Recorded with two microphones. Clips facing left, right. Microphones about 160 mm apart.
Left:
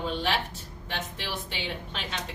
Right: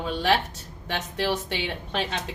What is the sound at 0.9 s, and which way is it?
A woman's voice, 75° right (ahead or behind).